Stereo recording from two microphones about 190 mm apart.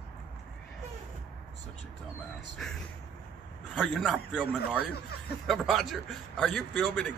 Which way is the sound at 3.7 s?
5° left (ahead or behind).